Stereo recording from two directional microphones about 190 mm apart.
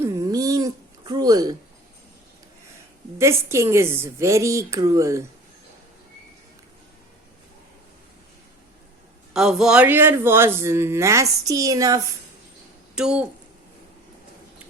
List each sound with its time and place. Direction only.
0.0 s a sound: 15° right (ahead or behind)
3.2 s speech: 15° right (ahead or behind)
9.3 s speech: 5° right (ahead or behind); by 12.0 s 20° right (ahead or behind)
13.0 s speech: 5° right (ahead or behind)